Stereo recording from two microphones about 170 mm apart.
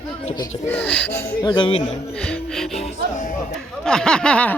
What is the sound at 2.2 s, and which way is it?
Music, centre (ahead or behind).